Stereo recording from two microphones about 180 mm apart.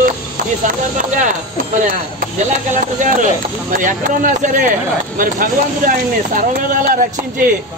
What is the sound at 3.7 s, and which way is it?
Speech, 45° right (ahead or behind).